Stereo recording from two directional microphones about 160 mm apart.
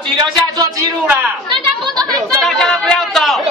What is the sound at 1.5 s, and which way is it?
Children playing, 25° right (ahead or behind).